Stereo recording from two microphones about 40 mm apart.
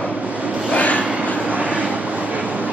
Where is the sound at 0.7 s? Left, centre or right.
Left.